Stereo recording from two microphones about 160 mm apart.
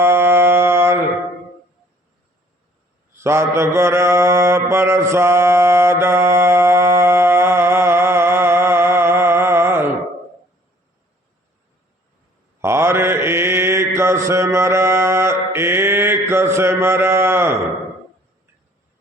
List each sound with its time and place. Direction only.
0.0 s mantra: 15° right (ahead or behind)
3.2 s mantra: 15° right (ahead or behind)
12.6 s mantra: 15° right (ahead or behind)